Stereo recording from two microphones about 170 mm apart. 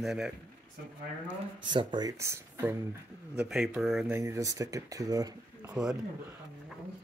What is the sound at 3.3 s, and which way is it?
Speech, centre (ahead or behind).